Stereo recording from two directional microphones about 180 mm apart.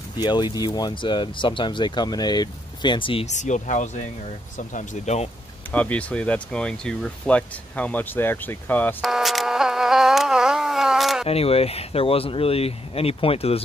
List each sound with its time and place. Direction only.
0.2 s speech: 25° left (ahead or behind)
5.7 s speech: 10° left (ahead or behind)
9.1 s a sound: centre (ahead or behind)
11.2 s speech: 35° left (ahead or behind)